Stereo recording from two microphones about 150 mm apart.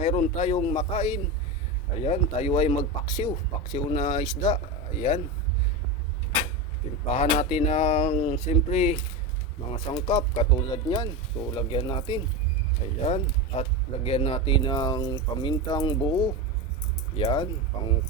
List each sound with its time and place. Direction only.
0.0 s speech: 45° left (ahead or behind)
7.1 s speech: 45° left (ahead or behind)
9.6 s speech: 35° left (ahead or behind)
12.8 s speech: 45° left (ahead or behind)